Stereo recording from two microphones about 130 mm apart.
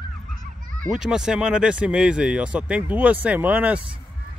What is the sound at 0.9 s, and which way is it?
Speech, 5° right (ahead or behind).